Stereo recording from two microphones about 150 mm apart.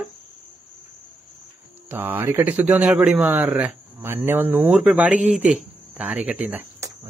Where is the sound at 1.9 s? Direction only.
15° right (ahead or behind).